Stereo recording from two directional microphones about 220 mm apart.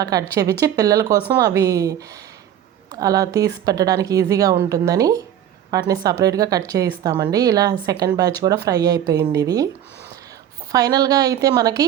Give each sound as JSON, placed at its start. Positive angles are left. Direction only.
{"t": 0.0, "sound": "speech", "side_deg": -15}
{"t": 10.7, "sound": "speech", "side_deg": -15}